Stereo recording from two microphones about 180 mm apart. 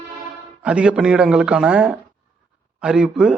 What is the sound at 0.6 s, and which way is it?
Speech, 5° right (ahead or behind).